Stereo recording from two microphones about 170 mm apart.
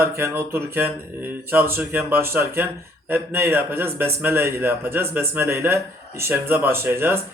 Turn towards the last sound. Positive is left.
turn(degrees=-15)  # may be behind; listen again after turning